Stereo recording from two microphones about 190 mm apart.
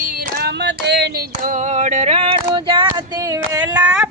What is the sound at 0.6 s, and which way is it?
Female singing, 60° right (ahead or behind).